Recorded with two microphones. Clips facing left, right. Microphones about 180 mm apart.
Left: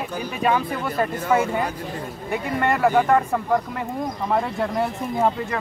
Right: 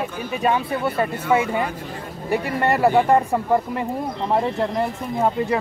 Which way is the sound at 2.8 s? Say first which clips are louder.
Right 2 dB; 10° right (ahead or behind).